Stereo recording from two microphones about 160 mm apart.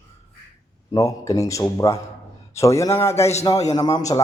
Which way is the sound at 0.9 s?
20° left (ahead or behind).